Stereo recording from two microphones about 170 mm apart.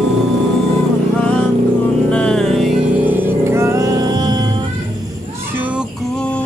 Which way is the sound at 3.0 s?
10° right (ahead or behind).